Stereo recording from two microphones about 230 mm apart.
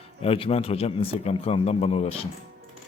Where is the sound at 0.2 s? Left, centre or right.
Left.